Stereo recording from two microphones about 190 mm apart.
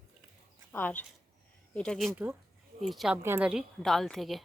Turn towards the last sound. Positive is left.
turn(degrees=0)  # may be behind; listen again after turning